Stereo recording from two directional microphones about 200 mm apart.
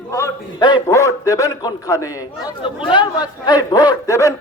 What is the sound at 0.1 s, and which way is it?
A man's voice, 15° left (ahead or behind).